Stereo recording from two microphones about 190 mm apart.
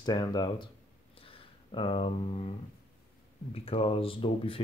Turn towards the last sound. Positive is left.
turn(degrees=30)  # may be behind; listen again after turning